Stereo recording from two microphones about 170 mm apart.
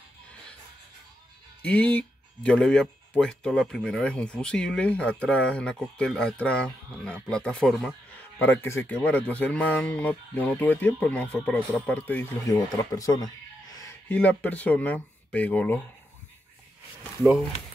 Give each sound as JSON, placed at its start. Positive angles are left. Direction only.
{"t": 1.7, "sound": "speech", "side_deg": 10}
{"t": 8.6, "sound": "speech", "side_deg": 15}
{"t": 12.9, "sound": "speech", "side_deg": 20}
{"t": 17.2, "sound": "speech", "side_deg": 0}